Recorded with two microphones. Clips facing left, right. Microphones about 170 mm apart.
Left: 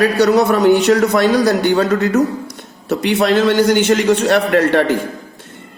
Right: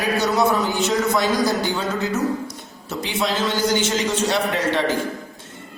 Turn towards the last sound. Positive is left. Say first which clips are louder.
# left 8 dB
turn(degrees=60)  # may be behind; listen again after turning